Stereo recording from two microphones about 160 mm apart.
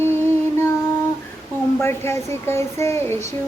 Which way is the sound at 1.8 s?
15° left (ahead or behind).